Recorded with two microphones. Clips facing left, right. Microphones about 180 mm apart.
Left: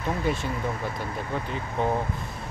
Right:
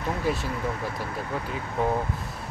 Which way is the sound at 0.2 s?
Centre (ahead or behind).